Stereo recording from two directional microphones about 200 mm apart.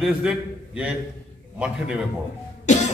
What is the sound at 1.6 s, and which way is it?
Speech, 5° right (ahead or behind).